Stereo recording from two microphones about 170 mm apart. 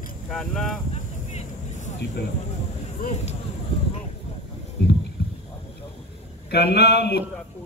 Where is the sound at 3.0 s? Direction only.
40° left (ahead or behind).